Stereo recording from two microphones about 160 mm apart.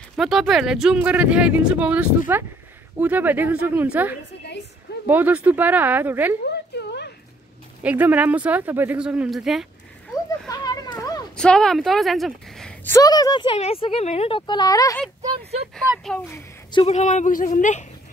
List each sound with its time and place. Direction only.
0.1 s speech: centre (ahead or behind)
6.4 s a sound: 90° left
7.8 s speech: 10° right (ahead or behind)
10.5 s children playing: 25° left (ahead or behind)
11.3 s speech: 5° left (ahead or behind)
12.8 s speech: 20° left (ahead or behind)
13.6 s speech: 35° left (ahead or behind)
16.7 s a woman's voice: 40° left (ahead or behind)